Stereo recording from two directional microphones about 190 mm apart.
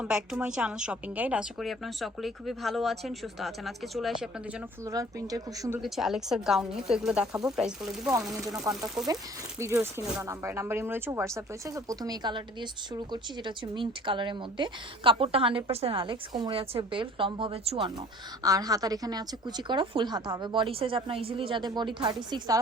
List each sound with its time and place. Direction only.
0.0 s a woman's voice: 5° right (ahead or behind)
4.9 s speech: 20° right (ahead or behind)
5.8 s a woman's voice: centre (ahead or behind)
9.6 s a woman's voice: 15° right (ahead or behind)